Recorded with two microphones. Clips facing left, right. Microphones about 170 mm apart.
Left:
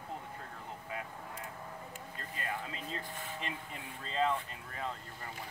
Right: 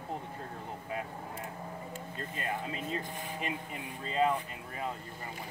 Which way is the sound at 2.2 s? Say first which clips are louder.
Right 4 dB; 20° right (ahead or behind).